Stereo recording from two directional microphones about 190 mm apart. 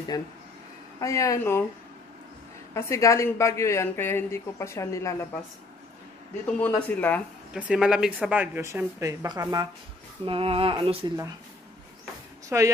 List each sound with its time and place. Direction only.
0.1 s a woman's voice: 20° left (ahead or behind)
2.7 s a woman's voice: 15° left (ahead or behind)
6.4 s a woman's voice: 10° left (ahead or behind)
7.5 s speech: 5° right (ahead or behind)
10.2 s speech: 30° right (ahead or behind)
12.4 s speech: 15° right (ahead or behind)